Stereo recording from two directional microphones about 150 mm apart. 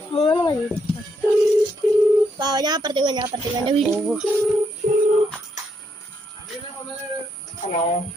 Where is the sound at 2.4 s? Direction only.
25° right (ahead or behind).